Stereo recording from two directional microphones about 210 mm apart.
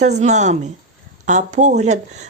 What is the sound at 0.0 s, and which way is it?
Speech, 35° right (ahead or behind).